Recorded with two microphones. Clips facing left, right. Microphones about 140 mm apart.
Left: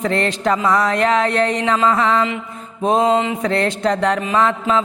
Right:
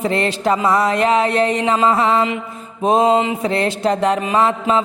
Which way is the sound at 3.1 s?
20° right (ahead or behind).